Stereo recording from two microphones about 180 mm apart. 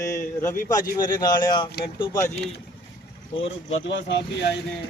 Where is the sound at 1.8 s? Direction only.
65° left (ahead or behind).